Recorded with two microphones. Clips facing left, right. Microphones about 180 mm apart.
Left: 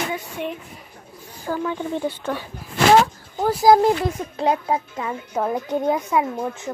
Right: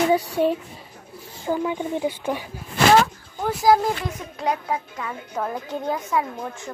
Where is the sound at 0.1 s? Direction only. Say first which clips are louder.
Right 8 dB; 35° right (ahead or behind).